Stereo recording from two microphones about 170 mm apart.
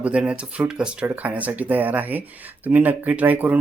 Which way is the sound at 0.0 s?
5° right (ahead or behind).